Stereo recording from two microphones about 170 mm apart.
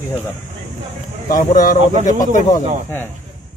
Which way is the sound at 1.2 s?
55° left (ahead or behind).